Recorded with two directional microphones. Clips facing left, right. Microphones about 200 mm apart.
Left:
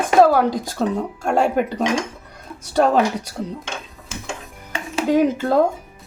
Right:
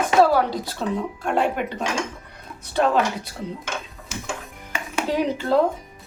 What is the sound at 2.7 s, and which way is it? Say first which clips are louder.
Speech: left 4 dB; 40° left (ahead or behind).